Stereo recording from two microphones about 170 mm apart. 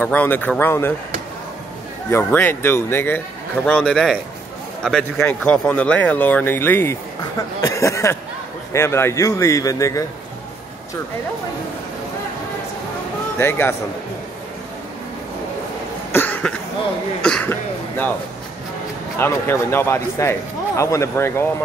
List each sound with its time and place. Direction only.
0.0 s speech: 10° left (ahead or behind)
2.0 s a man's voice: 15° left (ahead or behind)
13.4 s speech: 15° left (ahead or behind)
16.1 s cough: 10° left (ahead or behind)
17.2 s speech: 5° left (ahead or behind)
19.1 s speech: 15° left (ahead or behind)